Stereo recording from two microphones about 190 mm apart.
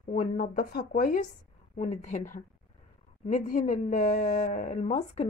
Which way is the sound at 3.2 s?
40° left (ahead or behind).